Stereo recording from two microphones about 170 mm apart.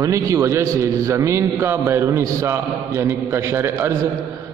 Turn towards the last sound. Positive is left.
turn(degrees=-15)  # may be behind; listen again after turning